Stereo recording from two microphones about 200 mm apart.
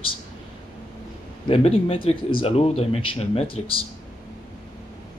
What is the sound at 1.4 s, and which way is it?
Speech, 30° left (ahead or behind).